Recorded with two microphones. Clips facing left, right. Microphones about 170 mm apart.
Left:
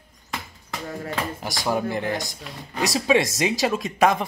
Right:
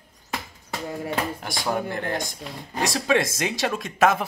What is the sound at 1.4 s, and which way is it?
Speech, 5° left (ahead or behind).